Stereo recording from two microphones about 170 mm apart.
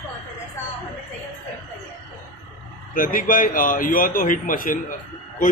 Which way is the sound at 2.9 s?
55° left (ahead or behind).